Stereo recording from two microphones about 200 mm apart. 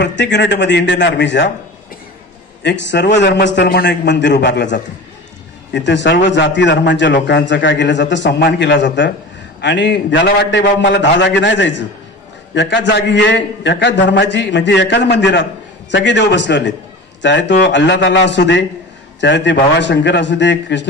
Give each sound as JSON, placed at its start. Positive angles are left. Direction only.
{"t": 0.0, "sound": "a man's voice", "side_deg": 60}
{"t": 2.6, "sound": "a man's voice", "side_deg": 60}